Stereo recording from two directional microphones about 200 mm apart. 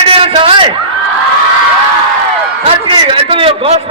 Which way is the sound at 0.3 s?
25° right (ahead or behind).